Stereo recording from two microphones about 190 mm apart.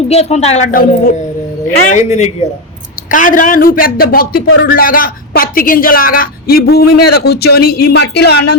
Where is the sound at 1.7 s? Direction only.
40° left (ahead or behind).